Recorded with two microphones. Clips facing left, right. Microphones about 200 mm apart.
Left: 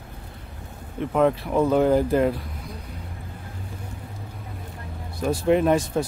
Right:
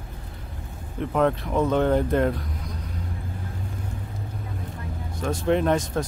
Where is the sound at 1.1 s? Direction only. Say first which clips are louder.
Left 2 dB; 5° left (ahead or behind).